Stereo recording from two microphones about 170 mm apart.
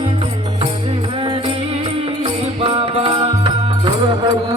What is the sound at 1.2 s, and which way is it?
Music, 30° right (ahead or behind).